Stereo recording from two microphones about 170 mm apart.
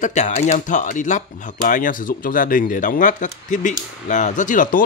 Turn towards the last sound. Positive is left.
turn(degrees=50)  # may be behind; listen again after turning